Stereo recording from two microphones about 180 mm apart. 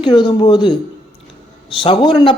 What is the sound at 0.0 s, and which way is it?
Speech, 25° left (ahead or behind).